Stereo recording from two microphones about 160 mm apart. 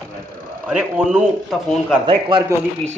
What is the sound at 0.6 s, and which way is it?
Speech, 5° right (ahead or behind).